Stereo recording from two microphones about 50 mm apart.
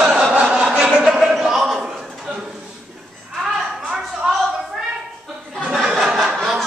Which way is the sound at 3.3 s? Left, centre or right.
Centre.